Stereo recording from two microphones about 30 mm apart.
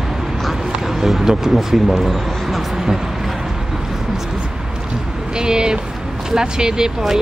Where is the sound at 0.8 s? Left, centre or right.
Centre.